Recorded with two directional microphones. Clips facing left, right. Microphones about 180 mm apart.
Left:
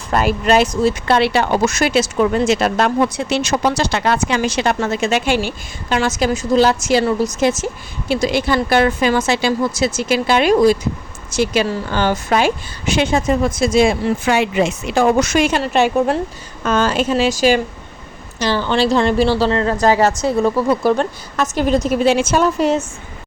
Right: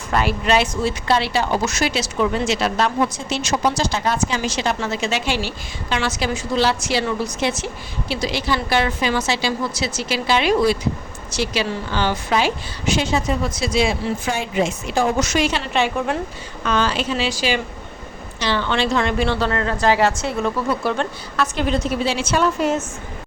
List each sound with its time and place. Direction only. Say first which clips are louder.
0.1 s a woman's voice: left 4 dB; 45° left (ahead or behind)
1.0 s a woman's voice: left 4 dB; 60° left (ahead or behind)
14.3 s a woman's voice: left 5 dB; 75° left (ahead or behind); by 19.7 s 30° left (ahead or behind)
19.8 s a woman's voice: left 2 dB; 40° left (ahead or behind)